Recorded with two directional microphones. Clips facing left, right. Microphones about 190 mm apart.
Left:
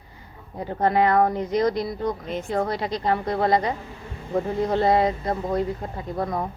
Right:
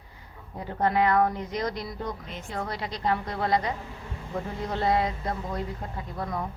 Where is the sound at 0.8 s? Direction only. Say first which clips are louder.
Left 3 dB; 35° left (ahead or behind).